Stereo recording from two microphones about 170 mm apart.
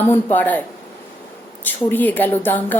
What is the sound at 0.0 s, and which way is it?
Speech, 10° left (ahead or behind).